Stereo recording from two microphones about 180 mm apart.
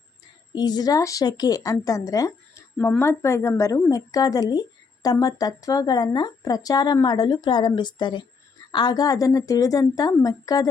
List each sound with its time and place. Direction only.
0.5 s speech: 25° left (ahead or behind)